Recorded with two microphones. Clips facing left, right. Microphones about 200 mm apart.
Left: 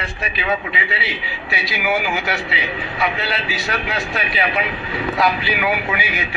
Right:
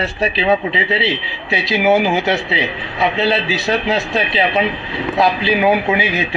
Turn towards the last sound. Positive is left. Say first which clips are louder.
# right 7 dB
turn(degrees=-25)  # may be behind; listen again after turning